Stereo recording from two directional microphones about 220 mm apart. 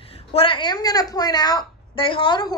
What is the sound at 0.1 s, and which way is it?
A woman's voice, 25° left (ahead or behind).